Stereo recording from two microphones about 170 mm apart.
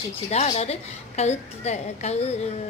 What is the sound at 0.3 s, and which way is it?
A woman's voice, 40° left (ahead or behind).